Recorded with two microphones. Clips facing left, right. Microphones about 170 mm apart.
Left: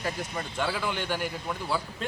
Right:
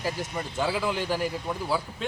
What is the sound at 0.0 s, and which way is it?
Speech, 10° right (ahead or behind).